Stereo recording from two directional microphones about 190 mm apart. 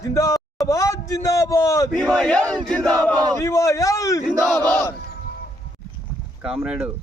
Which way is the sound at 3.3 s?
15° left (ahead or behind).